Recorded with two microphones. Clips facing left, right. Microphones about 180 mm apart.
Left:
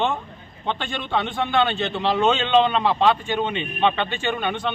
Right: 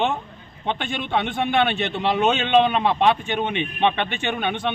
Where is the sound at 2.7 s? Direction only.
20° right (ahead or behind).